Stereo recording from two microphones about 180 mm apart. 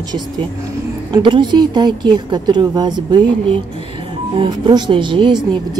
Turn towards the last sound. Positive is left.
turn(degrees=-25)  # may be behind; listen again after turning